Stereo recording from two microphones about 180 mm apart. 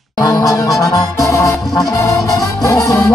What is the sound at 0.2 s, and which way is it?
Music, 20° left (ahead or behind).